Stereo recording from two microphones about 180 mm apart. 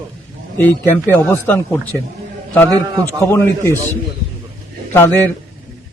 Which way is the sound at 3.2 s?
15° left (ahead or behind).